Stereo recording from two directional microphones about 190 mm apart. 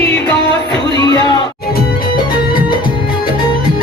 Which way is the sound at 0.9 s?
20° left (ahead or behind).